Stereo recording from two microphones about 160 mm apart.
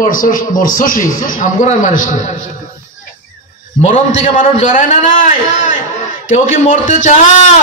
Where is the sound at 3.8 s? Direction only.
55° left (ahead or behind).